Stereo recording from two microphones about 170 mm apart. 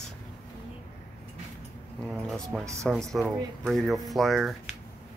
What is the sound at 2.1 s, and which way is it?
Speech, centre (ahead or behind).